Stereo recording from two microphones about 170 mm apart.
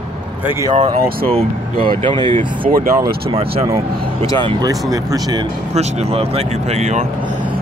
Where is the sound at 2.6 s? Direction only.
60° right (ahead or behind).